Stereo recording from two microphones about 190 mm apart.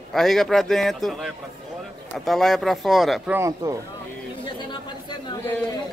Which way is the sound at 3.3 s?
15° right (ahead or behind).